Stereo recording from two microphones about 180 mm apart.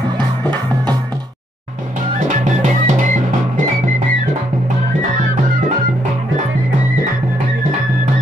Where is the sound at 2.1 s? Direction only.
45° right (ahead or behind).